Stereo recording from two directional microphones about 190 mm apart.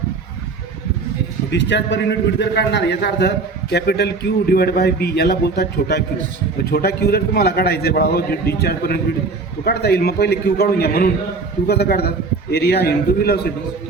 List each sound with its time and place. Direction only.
1.5 s a man's voice: 65° left (ahead or behind)